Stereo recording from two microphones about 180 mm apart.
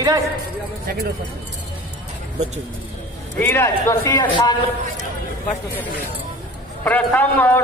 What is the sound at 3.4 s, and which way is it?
Speech, 10° left (ahead or behind).